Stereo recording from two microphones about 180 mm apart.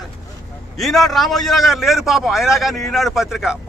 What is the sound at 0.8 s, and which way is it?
A man's voice, centre (ahead or behind).